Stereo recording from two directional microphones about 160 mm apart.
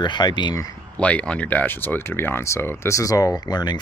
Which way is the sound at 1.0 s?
10° left (ahead or behind).